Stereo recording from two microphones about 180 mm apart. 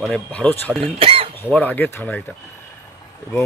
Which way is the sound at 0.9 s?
30° right (ahead or behind).